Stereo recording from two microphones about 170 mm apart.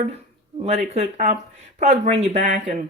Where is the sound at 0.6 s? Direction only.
40° right (ahead or behind).